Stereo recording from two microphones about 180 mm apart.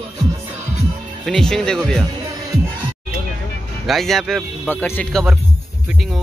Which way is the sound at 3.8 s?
Centre (ahead or behind).